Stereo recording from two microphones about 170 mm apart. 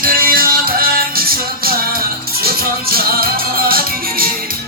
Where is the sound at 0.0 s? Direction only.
60° right (ahead or behind).